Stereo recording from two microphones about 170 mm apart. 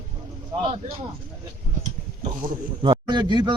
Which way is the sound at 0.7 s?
35° right (ahead or behind).